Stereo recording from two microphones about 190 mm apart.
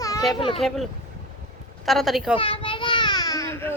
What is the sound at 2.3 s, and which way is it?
Children playing, 30° left (ahead or behind).